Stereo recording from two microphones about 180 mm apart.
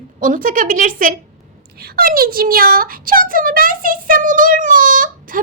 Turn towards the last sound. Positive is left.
turn(degrees=-45)  # may be behind; listen again after turning